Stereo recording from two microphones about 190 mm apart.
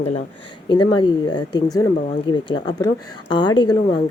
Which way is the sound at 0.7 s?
25° left (ahead or behind).